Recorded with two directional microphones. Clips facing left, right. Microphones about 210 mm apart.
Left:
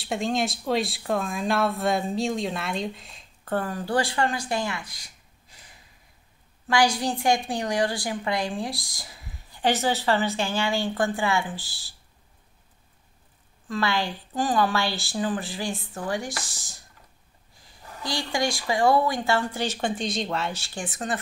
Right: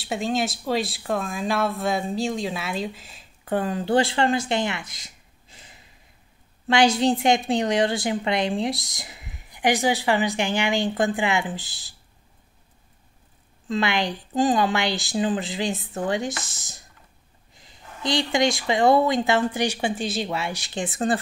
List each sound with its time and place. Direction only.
0.0 s speech: centre (ahead or behind)
3.5 s a woman's voice: 20° right (ahead or behind)
13.7 s a woman's voice: 20° right (ahead or behind)